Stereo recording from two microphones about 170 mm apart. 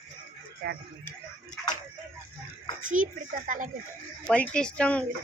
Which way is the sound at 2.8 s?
50° right (ahead or behind).